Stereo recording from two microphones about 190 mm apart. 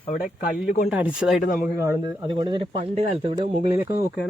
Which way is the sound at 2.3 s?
25° right (ahead or behind).